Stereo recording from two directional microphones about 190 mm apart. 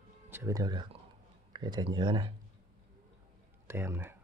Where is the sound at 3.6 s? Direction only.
15° right (ahead or behind).